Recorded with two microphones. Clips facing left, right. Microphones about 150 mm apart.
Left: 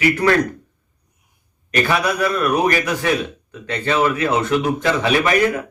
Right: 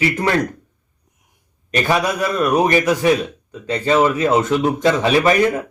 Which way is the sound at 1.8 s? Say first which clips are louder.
Right 1 dB; 30° right (ahead or behind).